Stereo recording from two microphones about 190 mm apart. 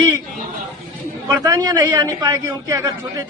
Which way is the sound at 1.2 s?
15° right (ahead or behind).